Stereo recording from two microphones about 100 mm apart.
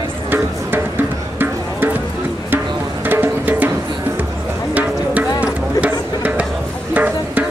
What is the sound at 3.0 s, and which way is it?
Music, 20° right (ahead or behind).